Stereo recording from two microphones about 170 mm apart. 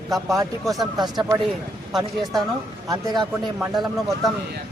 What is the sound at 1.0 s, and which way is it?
Speech, 25° right (ahead or behind).